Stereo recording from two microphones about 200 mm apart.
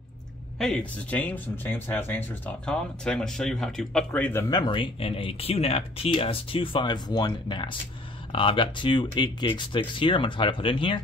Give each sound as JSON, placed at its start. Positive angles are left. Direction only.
{"t": 0.6, "sound": "speech", "side_deg": 5}